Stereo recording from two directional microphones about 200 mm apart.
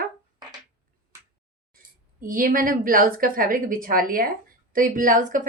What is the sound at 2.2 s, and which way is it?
A woman's voice, 45° right (ahead or behind).